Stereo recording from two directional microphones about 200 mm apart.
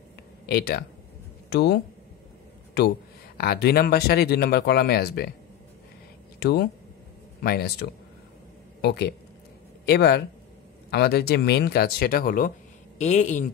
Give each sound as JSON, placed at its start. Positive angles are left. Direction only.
{"t": 0.5, "sound": "speech", "side_deg": 50}
{"t": 3.3, "sound": "speech", "side_deg": 50}
{"t": 6.4, "sound": "speech", "side_deg": 50}